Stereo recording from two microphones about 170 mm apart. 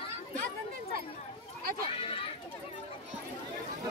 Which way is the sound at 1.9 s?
35° left (ahead or behind).